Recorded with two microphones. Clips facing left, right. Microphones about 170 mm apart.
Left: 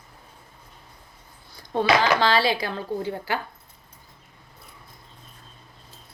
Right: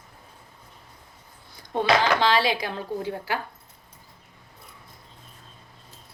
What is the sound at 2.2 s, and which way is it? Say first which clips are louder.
Speech: left 1 dB; 15° right (ahead or behind).